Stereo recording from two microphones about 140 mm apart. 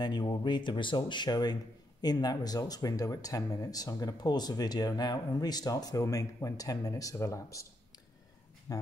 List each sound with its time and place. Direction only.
0.0 s speech: 30° left (ahead or behind)
8.7 s speech: 20° left (ahead or behind)